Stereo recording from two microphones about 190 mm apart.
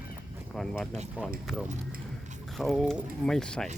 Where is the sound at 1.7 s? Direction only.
40° right (ahead or behind).